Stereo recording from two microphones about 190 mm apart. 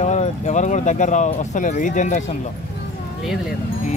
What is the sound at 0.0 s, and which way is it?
Speech, 35° left (ahead or behind).